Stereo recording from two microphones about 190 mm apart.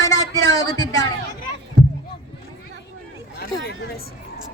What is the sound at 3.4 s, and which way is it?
Chatter, 55° left (ahead or behind).